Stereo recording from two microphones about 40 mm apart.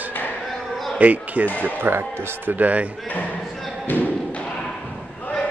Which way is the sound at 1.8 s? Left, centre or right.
Right.